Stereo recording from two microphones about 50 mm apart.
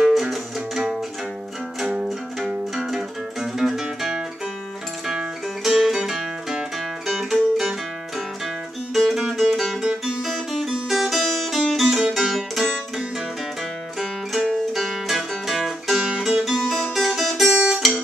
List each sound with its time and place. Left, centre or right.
0.1 s music: centre
3.8 s music: centre
9.0 s music: centre
14.5 s music: centre
16.2 s guitar: centre